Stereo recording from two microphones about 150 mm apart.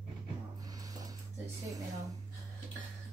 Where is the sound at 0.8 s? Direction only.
25° right (ahead or behind).